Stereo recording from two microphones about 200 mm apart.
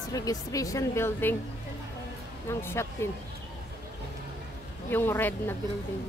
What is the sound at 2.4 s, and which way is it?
Speech, 10° left (ahead or behind).